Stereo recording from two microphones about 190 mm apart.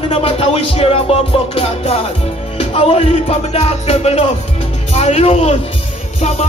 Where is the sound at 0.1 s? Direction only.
30° left (ahead or behind).